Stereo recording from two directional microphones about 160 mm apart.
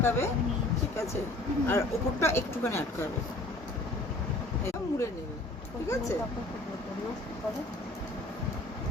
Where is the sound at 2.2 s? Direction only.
15° left (ahead or behind).